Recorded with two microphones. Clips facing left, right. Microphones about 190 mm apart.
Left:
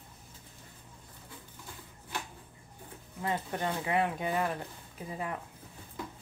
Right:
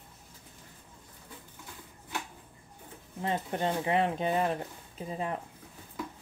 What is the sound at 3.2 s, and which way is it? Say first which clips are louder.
Speech: right 2 dB; 25° right (ahead or behind).